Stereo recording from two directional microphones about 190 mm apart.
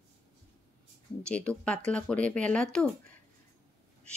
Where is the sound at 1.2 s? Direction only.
5° left (ahead or behind).